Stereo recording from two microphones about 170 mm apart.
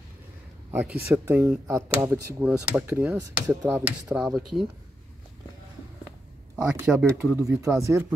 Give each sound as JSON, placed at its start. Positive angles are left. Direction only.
{"t": 1.1, "sound": "speech", "side_deg": -10}
{"t": 6.5, "sound": "speech", "side_deg": -5}